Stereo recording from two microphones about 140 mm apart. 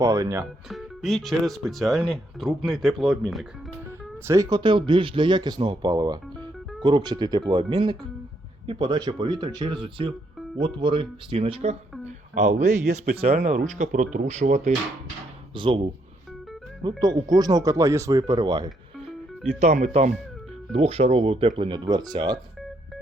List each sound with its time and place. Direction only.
0.0 s speech: 20° right (ahead or behind)
0.7 s speech: centre (ahead or behind)
4.3 s speech: 30° right (ahead or behind); by 14.7 s 55° right (ahead or behind)
15.5 s speech: 35° right (ahead or behind)
17.0 s speech: 30° right (ahead or behind)
19.5 s speech: 55° right (ahead or behind); by 22.4 s 30° right (ahead or behind)